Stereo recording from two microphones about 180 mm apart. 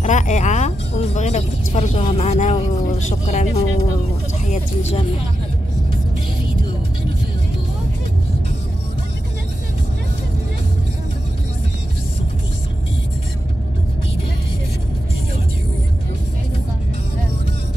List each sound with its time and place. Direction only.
0.0 s speech: 40° left (ahead or behind)